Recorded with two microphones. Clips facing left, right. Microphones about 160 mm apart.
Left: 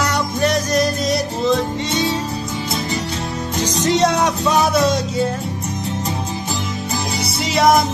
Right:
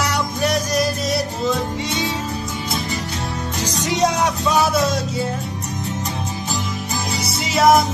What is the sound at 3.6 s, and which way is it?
Music, 10° right (ahead or behind).